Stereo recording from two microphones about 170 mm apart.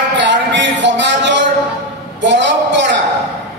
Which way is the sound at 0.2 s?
90° right.